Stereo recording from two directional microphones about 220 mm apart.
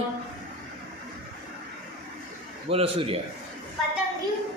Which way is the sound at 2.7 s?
25° right (ahead or behind).